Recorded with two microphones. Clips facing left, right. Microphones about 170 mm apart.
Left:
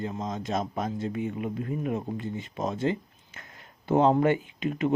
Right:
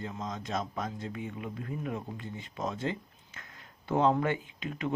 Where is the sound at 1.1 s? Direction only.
50° left (ahead or behind).